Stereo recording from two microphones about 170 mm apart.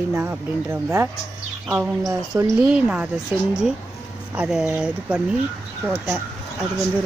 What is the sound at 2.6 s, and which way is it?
Speech, 5° right (ahead or behind).